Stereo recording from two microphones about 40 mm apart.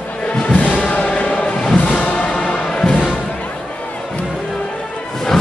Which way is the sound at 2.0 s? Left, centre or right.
Left.